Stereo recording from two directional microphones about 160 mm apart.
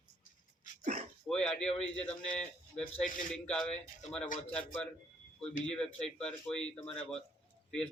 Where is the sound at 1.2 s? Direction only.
5° left (ahead or behind).